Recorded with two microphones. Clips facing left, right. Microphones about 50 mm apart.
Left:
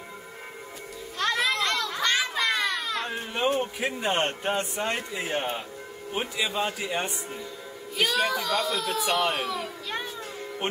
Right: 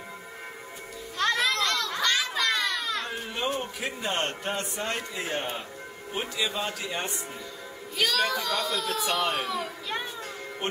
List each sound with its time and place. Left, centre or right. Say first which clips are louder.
1.1 s music: even; centre
2.0 s children playing: left 1 dB; centre
2.8 s baby cry: left 1 dB; centre
3.5 s a child's voice: left 4 dB; centre
10.6 s speech: left 1 dB; centre